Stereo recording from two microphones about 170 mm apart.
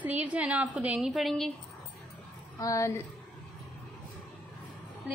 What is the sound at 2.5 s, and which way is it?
Speech, 20° left (ahead or behind).